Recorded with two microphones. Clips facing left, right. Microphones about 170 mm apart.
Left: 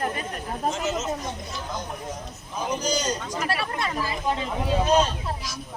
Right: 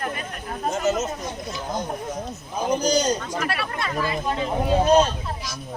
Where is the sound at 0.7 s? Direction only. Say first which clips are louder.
Right 5 dB; 40° right (ahead or behind).